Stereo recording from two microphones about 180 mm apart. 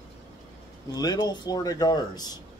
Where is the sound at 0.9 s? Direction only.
20° left (ahead or behind).